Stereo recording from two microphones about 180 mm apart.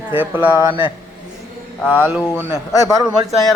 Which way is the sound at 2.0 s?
10° right (ahead or behind).